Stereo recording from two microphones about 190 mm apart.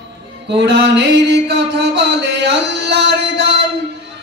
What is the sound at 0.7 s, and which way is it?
Music, 65° right (ahead or behind).